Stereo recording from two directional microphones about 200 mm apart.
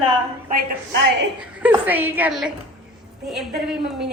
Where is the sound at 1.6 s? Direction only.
10° right (ahead or behind).